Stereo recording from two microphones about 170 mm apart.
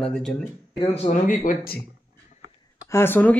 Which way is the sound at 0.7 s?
35° left (ahead or behind).